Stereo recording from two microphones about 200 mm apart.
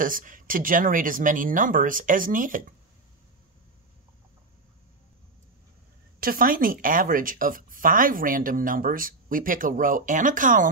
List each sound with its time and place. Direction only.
0.0 s speech: 45° right (ahead or behind)
6.1 s speech: 45° right (ahead or behind)